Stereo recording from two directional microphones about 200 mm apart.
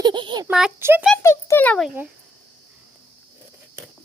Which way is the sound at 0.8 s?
10° right (ahead or behind).